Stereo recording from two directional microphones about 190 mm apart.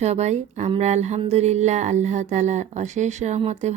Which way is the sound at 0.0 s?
35° right (ahead or behind).